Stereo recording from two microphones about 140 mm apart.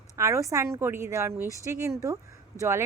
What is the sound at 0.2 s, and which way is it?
A woman's voice, 20° right (ahead or behind).